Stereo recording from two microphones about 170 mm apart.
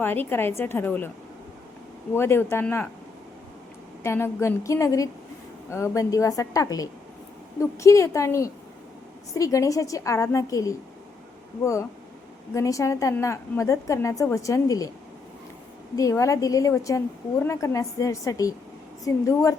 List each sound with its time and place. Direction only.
0.0 s a woman's voice: 10° left (ahead or behind)
2.1 s a woman's voice: 15° left (ahead or behind)
4.0 s a woman's voice: 15° left (ahead or behind)
16.0 s a woman's voice: 20° left (ahead or behind)